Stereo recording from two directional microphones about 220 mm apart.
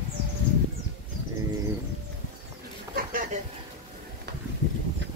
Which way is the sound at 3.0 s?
40° right (ahead or behind).